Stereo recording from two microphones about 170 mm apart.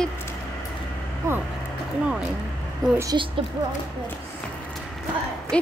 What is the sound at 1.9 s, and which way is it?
Speech, 5° right (ahead or behind).